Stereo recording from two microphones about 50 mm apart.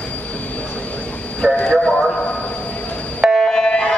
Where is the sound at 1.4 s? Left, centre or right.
Left.